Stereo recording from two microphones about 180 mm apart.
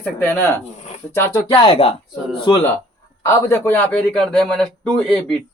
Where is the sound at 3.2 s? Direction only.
15° left (ahead or behind).